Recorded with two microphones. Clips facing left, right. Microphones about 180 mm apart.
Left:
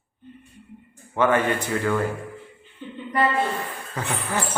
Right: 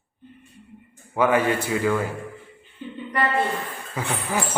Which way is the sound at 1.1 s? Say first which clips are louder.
Right 1 dB; 10° right (ahead or behind).